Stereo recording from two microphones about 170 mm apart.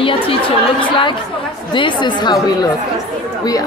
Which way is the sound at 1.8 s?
30° left (ahead or behind).